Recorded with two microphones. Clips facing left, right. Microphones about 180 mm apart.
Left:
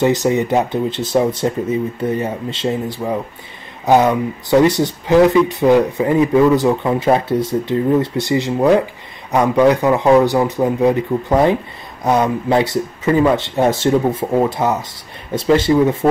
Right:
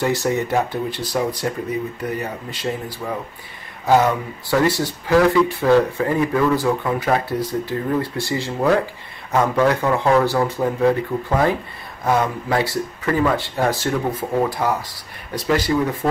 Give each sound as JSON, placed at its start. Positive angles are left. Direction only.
{"t": 0.0, "sound": "speech", "side_deg": 20}